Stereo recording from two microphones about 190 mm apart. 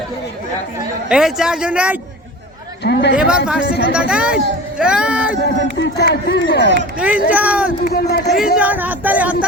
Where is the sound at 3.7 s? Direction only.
60° left (ahead or behind).